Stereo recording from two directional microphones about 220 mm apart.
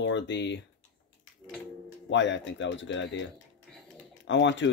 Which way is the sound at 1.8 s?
55° left (ahead or behind).